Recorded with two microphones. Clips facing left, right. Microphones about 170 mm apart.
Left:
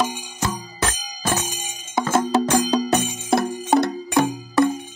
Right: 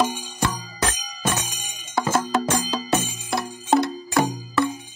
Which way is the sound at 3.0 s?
65° left (ahead or behind).